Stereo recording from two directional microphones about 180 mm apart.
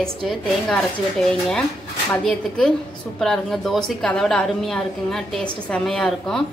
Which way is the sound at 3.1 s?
Centre (ahead or behind).